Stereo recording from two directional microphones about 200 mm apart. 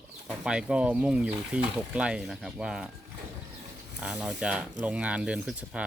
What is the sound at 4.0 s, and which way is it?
Speech, 5° right (ahead or behind).